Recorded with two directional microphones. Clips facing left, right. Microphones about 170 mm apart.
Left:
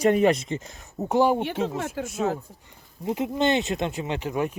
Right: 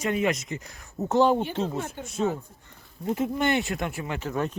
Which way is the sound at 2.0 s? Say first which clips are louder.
Left 7 dB; 90° left.